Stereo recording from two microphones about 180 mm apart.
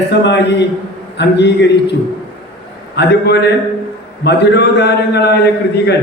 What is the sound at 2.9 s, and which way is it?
A man's voice, 65° left (ahead or behind).